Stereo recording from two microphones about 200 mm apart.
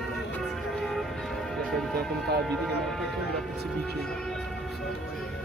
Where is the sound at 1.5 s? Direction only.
Centre (ahead or behind).